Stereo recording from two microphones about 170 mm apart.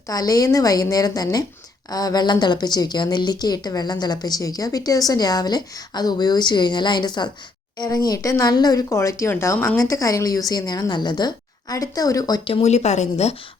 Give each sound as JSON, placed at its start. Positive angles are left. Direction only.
{"t": 0.1, "sound": "speech", "side_deg": 20}